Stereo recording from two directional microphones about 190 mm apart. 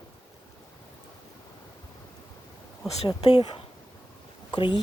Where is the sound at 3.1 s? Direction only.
25° left (ahead or behind).